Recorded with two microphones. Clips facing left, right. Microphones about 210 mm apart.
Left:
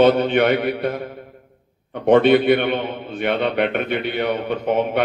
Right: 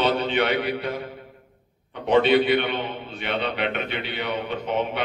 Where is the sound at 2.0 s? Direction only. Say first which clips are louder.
Left 5 dB; 50° left (ahead or behind).